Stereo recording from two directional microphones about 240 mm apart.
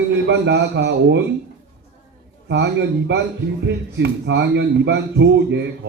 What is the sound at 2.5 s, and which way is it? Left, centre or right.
Speech, right.